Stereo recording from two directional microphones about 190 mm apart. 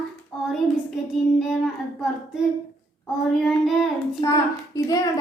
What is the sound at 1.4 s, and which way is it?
Speech, centre (ahead or behind).